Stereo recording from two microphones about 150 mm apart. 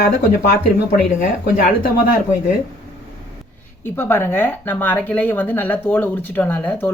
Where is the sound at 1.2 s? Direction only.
70° left (ahead or behind).